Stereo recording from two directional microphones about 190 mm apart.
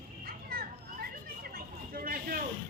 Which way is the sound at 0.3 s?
50° right (ahead or behind).